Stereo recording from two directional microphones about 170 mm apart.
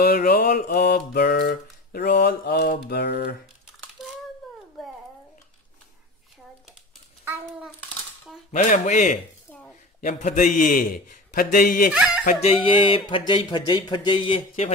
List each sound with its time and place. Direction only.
0.0 s mantra: 60° left (ahead or behind)
2.9 s a sound: 80° left
8.5 s a man's voice: 45° left (ahead or behind)
12.4 s speech: 35° left (ahead or behind)